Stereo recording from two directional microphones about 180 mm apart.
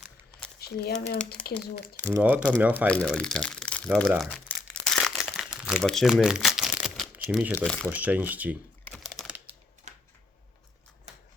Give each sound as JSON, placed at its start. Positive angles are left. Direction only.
{"t": 0.6, "sound": "speech", "side_deg": 60}
{"t": 2.1, "sound": "speech", "side_deg": -10}
{"t": 2.8, "sound": "speech", "side_deg": 5}
{"t": 4.2, "sound": "crumpling", "side_deg": 5}
{"t": 7.5, "sound": "speech", "side_deg": 5}
{"t": 7.9, "sound": "speech", "side_deg": -10}
{"t": 8.8, "sound": "typing", "side_deg": 0}
{"t": 9.9, "sound": "a sound", "side_deg": -40}